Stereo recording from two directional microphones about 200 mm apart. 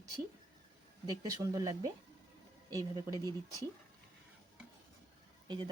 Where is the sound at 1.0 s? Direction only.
20° right (ahead or behind).